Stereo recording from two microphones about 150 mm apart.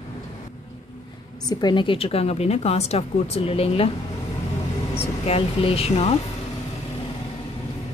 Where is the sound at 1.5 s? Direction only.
30° left (ahead or behind).